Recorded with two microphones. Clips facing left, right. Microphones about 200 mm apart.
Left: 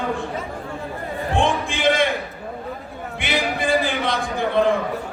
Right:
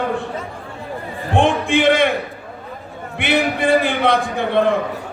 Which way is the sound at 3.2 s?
60° right (ahead or behind).